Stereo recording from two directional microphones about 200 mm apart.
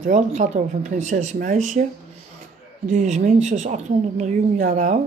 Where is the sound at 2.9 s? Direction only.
35° right (ahead or behind).